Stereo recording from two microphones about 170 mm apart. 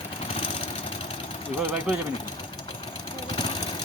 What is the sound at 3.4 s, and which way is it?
Vehicle, 25° left (ahead or behind).